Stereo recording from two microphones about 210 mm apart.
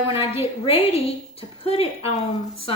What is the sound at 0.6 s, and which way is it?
A woman's voice, 25° left (ahead or behind).